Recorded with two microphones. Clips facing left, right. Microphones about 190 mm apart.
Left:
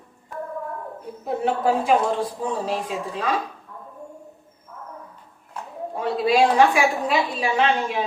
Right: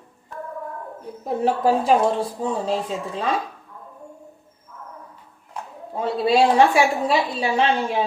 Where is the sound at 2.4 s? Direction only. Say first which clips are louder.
Right 2 dB; 25° right (ahead or behind).